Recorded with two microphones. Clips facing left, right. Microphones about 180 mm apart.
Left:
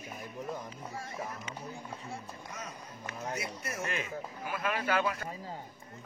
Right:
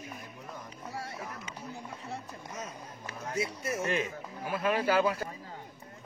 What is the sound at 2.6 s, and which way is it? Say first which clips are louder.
Speech: right 2 dB; 25° right (ahead or behind).